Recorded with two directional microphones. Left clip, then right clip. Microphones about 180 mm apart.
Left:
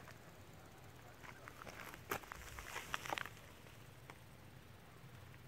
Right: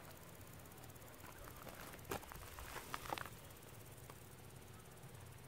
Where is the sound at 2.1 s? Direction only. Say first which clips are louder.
Left 3 dB; 15° left (ahead or behind).